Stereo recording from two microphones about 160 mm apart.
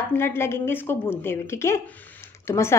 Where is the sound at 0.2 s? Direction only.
15° left (ahead or behind).